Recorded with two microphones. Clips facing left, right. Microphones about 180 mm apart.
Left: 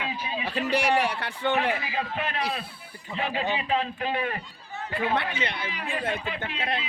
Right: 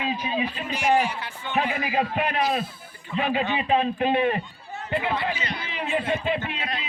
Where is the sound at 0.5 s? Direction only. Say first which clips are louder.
Left 1 dB; 65° left (ahead or behind).